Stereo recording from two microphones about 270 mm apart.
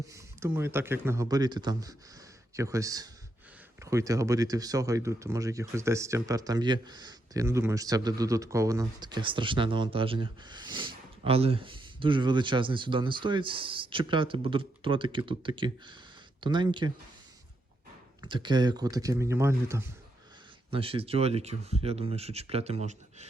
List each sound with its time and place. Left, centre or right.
0.1 s speech: centre
18.2 s speech: centre
20.7 s speech: right